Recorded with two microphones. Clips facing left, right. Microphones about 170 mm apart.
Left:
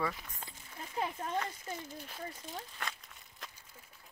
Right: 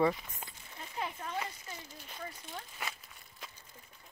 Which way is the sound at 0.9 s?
40° left (ahead or behind).